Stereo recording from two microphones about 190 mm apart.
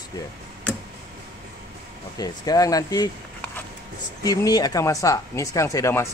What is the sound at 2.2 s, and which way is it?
Speech, 20° left (ahead or behind).